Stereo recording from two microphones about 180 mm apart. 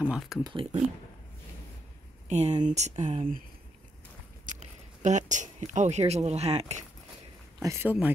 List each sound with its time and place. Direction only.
0.0 s speech: 5° right (ahead or behind)
0.4 s speech: 25° right (ahead or behind)
2.2 s speech: 40° right (ahead or behind)
4.6 s speech: 40° right (ahead or behind)
7.6 s speech: 15° right (ahead or behind)